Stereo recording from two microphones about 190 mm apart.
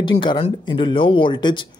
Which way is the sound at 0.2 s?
25° left (ahead or behind).